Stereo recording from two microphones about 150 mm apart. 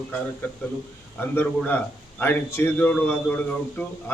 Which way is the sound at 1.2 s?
10° left (ahead or behind).